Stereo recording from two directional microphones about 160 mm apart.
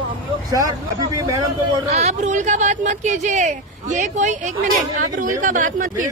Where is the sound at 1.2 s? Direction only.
20° right (ahead or behind).